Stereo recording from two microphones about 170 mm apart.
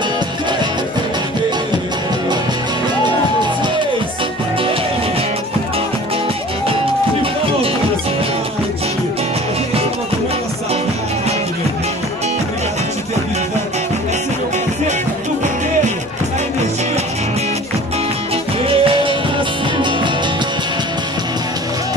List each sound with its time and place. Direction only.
18.7 s music: 30° right (ahead or behind)